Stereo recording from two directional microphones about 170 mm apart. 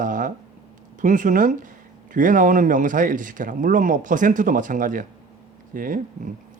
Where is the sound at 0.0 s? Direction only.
50° right (ahead or behind).